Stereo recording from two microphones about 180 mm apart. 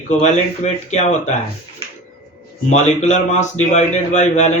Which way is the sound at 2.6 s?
40° left (ahead or behind).